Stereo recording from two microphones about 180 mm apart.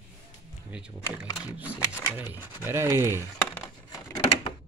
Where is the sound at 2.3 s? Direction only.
10° right (ahead or behind).